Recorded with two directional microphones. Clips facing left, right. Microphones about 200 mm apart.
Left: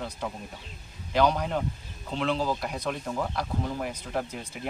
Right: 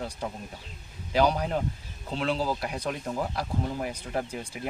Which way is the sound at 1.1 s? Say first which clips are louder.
Even; 10° right (ahead or behind).